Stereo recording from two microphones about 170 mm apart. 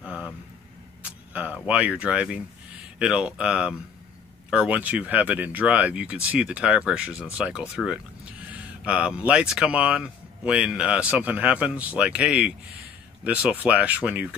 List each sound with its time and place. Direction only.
0.0 s vehicle: 5° right (ahead or behind)
1.0 s a sound: 10° right (ahead or behind)
3.0 s speech: 5° right (ahead or behind)